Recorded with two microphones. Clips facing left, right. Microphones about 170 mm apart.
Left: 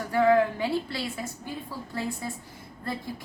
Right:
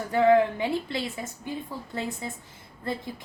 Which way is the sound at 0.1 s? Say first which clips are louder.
Right 1 dB; 20° right (ahead or behind).